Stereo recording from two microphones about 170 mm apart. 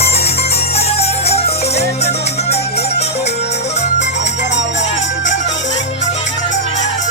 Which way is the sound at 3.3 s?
80° left.